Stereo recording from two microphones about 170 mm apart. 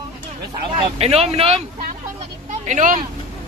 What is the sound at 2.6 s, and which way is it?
Speech, 50° right (ahead or behind).